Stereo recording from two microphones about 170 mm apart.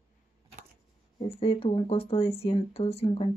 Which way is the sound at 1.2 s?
30° left (ahead or behind).